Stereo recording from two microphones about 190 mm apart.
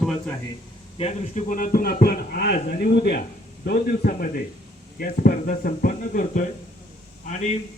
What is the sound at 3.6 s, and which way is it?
A man's voice, 50° left (ahead or behind).